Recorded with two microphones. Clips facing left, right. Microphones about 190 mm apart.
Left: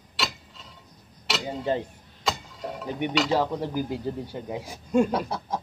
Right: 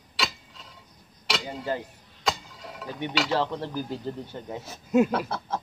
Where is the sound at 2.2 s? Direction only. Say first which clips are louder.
Even; centre (ahead or behind).